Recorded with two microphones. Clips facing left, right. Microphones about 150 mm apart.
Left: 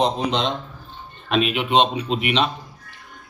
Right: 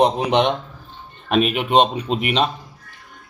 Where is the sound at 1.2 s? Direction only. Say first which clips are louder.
Right 2 dB; 45° right (ahead or behind).